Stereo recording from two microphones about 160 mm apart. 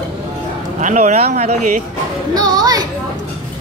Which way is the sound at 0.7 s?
45° right (ahead or behind).